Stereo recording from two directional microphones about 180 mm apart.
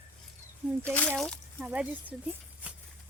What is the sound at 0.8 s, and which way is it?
Speech, 5° left (ahead or behind).